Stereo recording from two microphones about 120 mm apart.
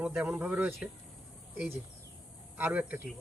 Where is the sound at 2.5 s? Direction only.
15° right (ahead or behind).